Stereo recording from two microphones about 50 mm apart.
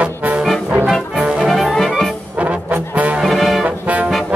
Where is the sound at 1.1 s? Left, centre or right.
Centre.